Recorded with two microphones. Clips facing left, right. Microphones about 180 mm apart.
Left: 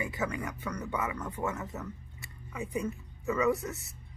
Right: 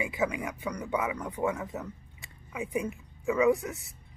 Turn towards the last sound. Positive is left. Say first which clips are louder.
# right 4 dB
turn(degrees=-15)  # may be behind; listen again after turning